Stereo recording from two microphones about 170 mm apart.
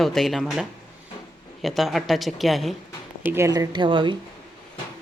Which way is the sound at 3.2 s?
15° right (ahead or behind).